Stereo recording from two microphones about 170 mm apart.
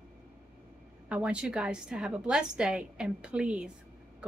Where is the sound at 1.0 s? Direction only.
5° right (ahead or behind).